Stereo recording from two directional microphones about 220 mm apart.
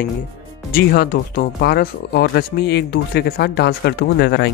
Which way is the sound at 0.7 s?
40° left (ahead or behind).